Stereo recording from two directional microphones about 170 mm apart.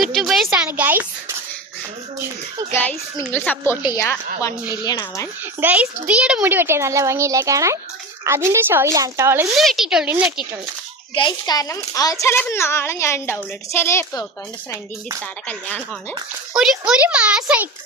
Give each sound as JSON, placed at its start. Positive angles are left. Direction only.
{"t": 0.0, "sound": "a sound", "side_deg": 0}
{"t": 2.7, "sound": "a child's voice", "side_deg": 10}
{"t": 5.5, "sound": "a child's voice", "side_deg": -10}
{"t": 9.6, "sound": "speech", "side_deg": 0}
{"t": 11.1, "sound": "a child's voice", "side_deg": 25}
{"t": 15.4, "sound": "a child's voice", "side_deg": 10}
{"t": 16.6, "sound": "a child's voice", "side_deg": -5}